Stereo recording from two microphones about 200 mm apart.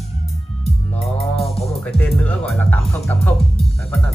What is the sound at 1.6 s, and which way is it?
Speech, 5° left (ahead or behind).